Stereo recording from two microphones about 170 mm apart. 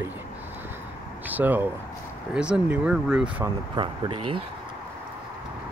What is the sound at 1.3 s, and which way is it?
Speech, 10° right (ahead or behind).